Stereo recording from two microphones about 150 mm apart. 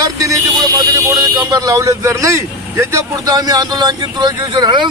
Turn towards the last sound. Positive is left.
turn(degrees=-30)  # may be behind; listen again after turning